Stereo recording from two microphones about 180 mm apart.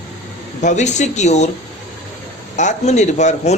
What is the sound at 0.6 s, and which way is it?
Speech, 40° left (ahead or behind).